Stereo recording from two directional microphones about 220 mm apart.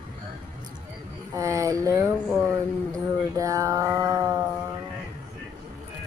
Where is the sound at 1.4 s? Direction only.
15° right (ahead or behind).